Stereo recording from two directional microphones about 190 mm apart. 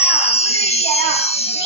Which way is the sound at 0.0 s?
35° left (ahead or behind).